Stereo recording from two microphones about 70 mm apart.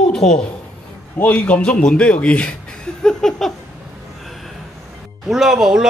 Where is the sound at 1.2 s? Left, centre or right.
Left.